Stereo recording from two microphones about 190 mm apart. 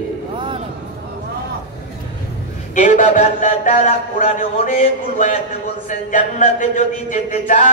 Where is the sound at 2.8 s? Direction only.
40° left (ahead or behind).